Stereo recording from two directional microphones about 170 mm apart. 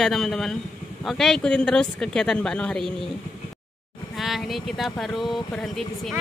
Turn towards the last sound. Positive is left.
turn(degrees=0)  # may be behind; listen again after turning